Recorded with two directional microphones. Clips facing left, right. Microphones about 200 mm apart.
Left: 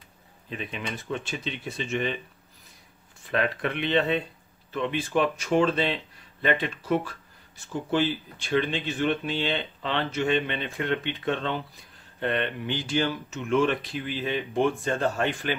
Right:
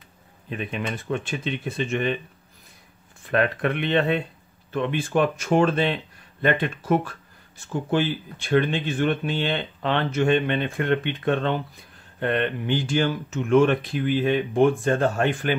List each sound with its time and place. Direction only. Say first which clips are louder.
0.5 s speech: right 5 dB; 50° right (ahead or behind)
3.3 s speech: right 4 dB; 55° right (ahead or behind)